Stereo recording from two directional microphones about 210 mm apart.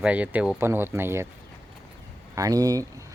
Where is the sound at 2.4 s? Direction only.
15° right (ahead or behind).